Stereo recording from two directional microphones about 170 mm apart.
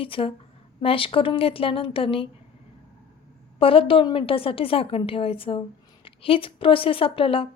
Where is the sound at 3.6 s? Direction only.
30° left (ahead or behind).